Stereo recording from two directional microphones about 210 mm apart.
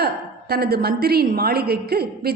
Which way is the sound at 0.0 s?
50° right (ahead or behind).